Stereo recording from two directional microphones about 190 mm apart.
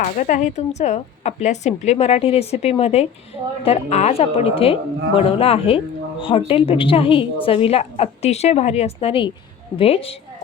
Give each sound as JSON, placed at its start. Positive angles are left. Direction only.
{"t": 0.0, "sound": "a woman's voice", "side_deg": 40}